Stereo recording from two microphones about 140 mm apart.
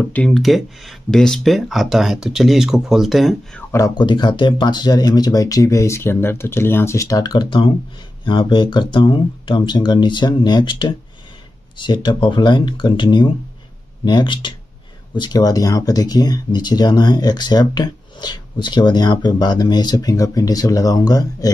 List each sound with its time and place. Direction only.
0.0 s speech: 10° left (ahead or behind)
3.7 s speech: 20° left (ahead or behind)
4.0 s speech: 35° left (ahead or behind)